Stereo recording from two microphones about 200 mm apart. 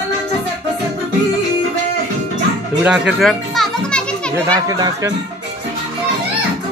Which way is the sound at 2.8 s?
5° right (ahead or behind).